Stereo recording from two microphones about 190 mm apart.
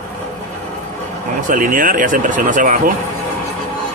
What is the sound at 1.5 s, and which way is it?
Speech, 45° right (ahead or behind).